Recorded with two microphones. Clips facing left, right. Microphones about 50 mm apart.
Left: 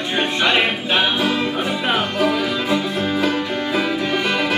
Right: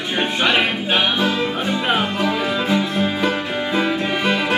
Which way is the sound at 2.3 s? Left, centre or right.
Centre.